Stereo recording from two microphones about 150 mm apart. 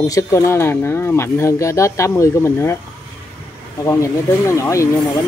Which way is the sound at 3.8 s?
20° left (ahead or behind).